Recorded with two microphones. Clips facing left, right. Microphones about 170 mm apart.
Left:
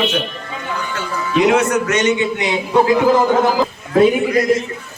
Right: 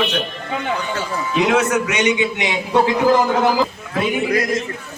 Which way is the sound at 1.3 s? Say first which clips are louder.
Left 3 dB; centre (ahead or behind).